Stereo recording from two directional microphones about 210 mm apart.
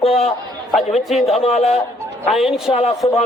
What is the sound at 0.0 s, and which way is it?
Speech, 30° left (ahead or behind).